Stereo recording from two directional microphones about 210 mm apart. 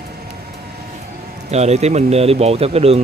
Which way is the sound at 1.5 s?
30° right (ahead or behind).